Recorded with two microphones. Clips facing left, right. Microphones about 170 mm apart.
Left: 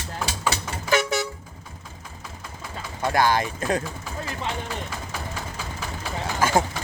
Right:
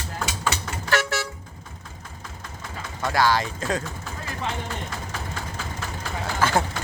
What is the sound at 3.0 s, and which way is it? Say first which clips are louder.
Speech: left 1 dB; 20° left (ahead or behind).